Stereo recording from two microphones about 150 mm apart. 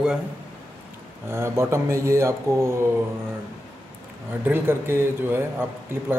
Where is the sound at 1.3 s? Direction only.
20° right (ahead or behind).